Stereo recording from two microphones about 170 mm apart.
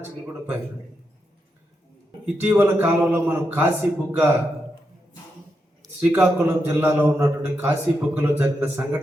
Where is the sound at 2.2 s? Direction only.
10° right (ahead or behind).